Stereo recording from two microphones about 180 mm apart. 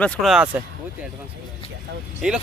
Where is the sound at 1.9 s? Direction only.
70° right (ahead or behind).